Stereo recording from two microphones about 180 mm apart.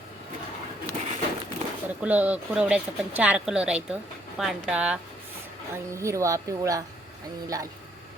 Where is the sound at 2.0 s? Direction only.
10° right (ahead or behind).